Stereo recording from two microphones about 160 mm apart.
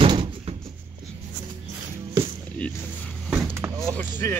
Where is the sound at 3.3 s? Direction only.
15° right (ahead or behind).